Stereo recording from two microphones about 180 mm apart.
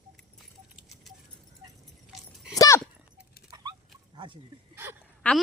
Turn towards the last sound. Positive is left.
turn(degrees=5)  # may be behind; listen again after turning